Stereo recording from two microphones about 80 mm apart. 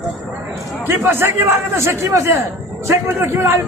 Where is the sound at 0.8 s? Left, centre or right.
Right.